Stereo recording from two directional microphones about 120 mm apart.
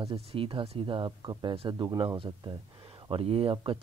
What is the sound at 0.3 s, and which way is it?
Speech, 45° right (ahead or behind).